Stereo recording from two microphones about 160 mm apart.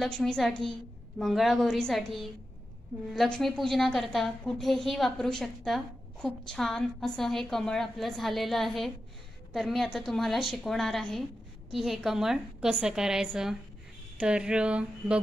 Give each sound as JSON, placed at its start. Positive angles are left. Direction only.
{"t": 0.2, "sound": "a woman's voice", "side_deg": 0}